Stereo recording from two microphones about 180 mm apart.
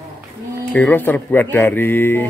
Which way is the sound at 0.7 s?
10° left (ahead or behind).